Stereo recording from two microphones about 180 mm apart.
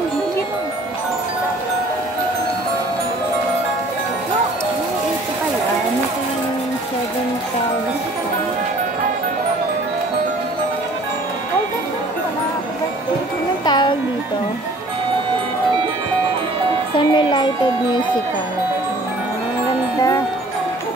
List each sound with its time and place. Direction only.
13.7 s music: 25° left (ahead or behind)
16.9 s music: 25° left (ahead or behind)